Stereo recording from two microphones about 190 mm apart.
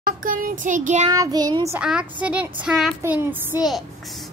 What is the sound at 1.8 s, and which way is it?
Speech, 5° right (ahead or behind).